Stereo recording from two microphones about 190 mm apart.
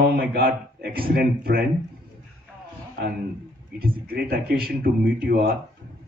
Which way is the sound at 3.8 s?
50° right (ahead or behind).